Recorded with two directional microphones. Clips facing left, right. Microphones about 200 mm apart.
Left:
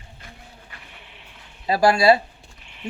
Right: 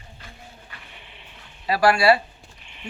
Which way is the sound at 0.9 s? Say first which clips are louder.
Even; centre (ahead or behind).